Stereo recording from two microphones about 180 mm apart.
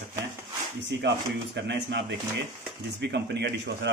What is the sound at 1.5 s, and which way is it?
Speech, 70° right (ahead or behind).